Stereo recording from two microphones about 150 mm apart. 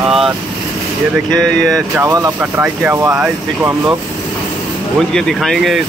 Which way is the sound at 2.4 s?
10° right (ahead or behind).